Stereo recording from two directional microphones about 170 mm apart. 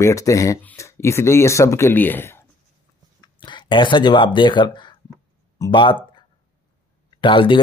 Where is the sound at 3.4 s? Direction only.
25° left (ahead or behind).